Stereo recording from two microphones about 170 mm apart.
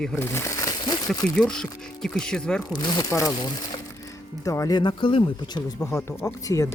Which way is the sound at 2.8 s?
25° left (ahead or behind).